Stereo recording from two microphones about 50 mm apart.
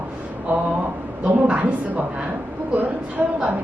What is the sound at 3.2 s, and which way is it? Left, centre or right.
Speech, right.